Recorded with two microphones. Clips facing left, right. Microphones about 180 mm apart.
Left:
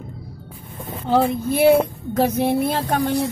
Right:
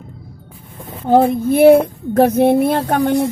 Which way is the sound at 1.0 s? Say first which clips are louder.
Right 6 dB; 50° right (ahead or behind).